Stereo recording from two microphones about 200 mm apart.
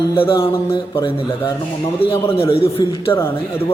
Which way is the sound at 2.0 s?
25° left (ahead or behind).